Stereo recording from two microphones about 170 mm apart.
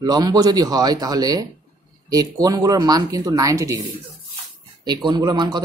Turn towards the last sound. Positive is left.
turn(degrees=-25)  # may be behind; listen again after turning